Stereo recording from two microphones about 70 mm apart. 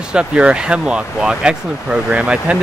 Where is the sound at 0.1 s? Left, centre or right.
Centre.